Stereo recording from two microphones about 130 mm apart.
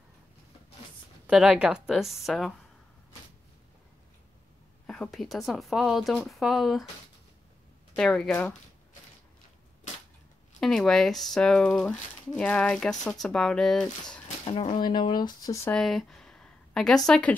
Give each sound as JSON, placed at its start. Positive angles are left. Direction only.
{"t": 1.2, "sound": "speech", "side_deg": -5}
{"t": 4.8, "sound": "speech", "side_deg": 5}
{"t": 7.9, "sound": "speech", "side_deg": 5}
{"t": 10.6, "sound": "speech", "side_deg": 5}
{"t": 14.4, "sound": "speech", "side_deg": 45}
{"t": 15.7, "sound": "speech", "side_deg": 0}